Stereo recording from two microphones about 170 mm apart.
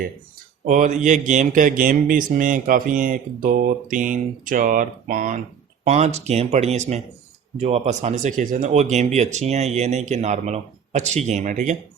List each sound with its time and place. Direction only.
0.6 s a man's voice: 45° right (ahead or behind)